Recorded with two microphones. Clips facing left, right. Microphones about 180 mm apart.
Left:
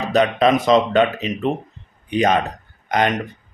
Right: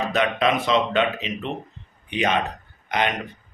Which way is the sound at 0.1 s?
35° left (ahead or behind).